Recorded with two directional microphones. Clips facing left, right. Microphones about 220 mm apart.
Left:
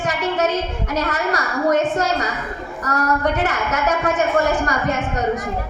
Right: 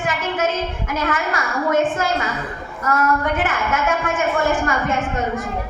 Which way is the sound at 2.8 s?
40° left (ahead or behind).